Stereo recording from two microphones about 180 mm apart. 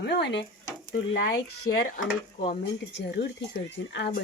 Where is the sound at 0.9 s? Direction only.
55° left (ahead or behind).